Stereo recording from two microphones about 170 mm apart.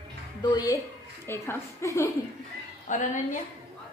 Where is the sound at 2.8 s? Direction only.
45° left (ahead or behind).